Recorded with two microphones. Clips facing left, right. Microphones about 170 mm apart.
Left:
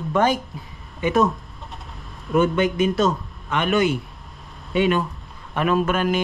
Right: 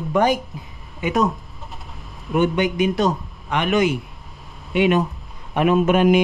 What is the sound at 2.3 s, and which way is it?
Speech, 20° right (ahead or behind).